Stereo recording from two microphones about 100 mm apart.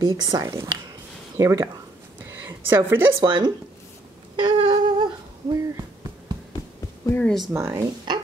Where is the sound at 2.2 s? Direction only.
25° right (ahead or behind).